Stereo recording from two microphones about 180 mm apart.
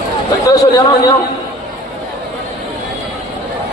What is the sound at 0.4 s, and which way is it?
Speech, 20° left (ahead or behind).